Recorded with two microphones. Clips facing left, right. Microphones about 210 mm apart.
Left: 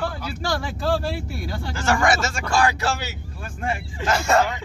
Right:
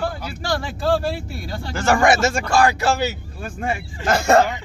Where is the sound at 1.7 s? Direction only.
55° right (ahead or behind).